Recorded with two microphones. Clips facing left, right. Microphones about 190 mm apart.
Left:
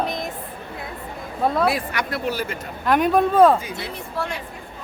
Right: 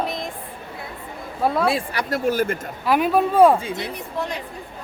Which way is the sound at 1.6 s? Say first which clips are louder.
Even; 25° right (ahead or behind).